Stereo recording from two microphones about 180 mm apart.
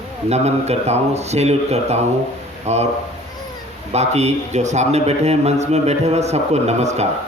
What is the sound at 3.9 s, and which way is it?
A man's voice, 35° right (ahead or behind).